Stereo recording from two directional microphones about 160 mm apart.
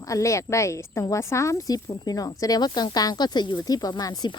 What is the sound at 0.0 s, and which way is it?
Speech, 20° left (ahead or behind).